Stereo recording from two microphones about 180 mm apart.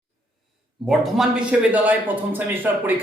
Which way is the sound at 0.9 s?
Centre (ahead or behind).